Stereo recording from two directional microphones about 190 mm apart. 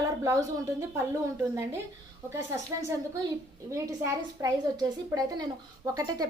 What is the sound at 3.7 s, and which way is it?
A woman's voice, 15° right (ahead or behind).